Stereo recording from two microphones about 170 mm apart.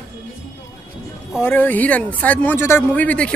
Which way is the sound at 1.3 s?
10° left (ahead or behind).